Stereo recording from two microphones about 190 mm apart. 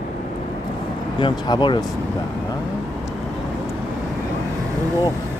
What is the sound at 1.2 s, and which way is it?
Speech, 25° left (ahead or behind).